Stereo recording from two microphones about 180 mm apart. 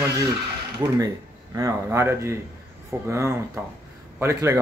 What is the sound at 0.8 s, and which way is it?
Speech, 20° right (ahead or behind).